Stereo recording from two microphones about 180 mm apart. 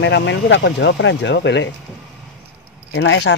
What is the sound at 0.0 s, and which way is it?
Speech, 85° left.